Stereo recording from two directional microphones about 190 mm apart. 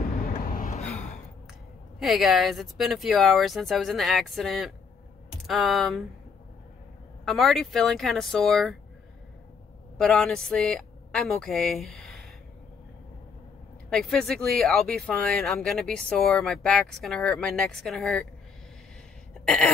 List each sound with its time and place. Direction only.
0.2 s a sound: 50° left (ahead or behind)
2.0 s speech: centre (ahead or behind)
7.2 s speech: centre (ahead or behind)
9.9 s speech: 5° left (ahead or behind)
13.8 s speech: 5° left (ahead or behind)
19.3 s throat clearing: 5° left (ahead or behind)